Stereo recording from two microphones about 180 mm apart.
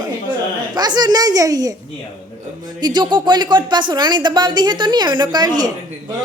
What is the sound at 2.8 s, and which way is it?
Speech, 25° right (ahead or behind).